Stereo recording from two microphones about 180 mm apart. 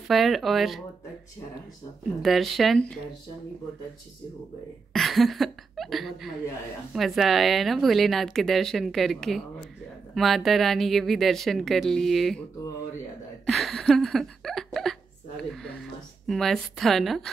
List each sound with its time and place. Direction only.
0.1 s a woman's voice: centre (ahead or behind)
2.2 s a woman's voice: centre (ahead or behind)
4.9 s a woman's voice: centre (ahead or behind)
13.5 s a sound: centre (ahead or behind)